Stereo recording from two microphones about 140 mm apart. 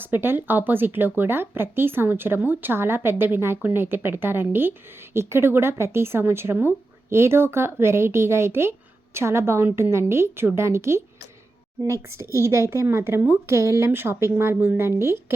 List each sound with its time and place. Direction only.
0.0 s a woman's voice: 15° right (ahead or behind)